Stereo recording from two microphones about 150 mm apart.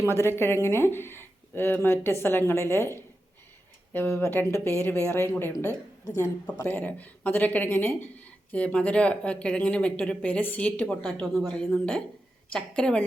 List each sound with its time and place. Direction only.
0.1 s a woman's voice: 15° left (ahead or behind)